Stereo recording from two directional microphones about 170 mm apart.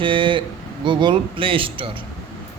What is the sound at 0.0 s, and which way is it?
A man's voice, 30° right (ahead or behind).